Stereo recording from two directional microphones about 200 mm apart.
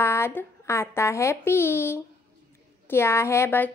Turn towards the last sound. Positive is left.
turn(degrees=10)  # may be behind; listen again after turning